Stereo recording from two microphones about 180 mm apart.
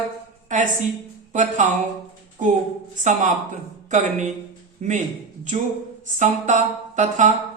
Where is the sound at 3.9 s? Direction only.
40° right (ahead or behind).